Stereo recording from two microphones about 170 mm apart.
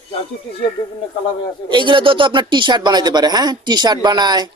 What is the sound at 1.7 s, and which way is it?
Speech, 30° right (ahead or behind).